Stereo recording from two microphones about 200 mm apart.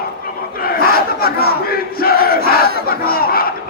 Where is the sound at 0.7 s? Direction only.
50° left (ahead or behind).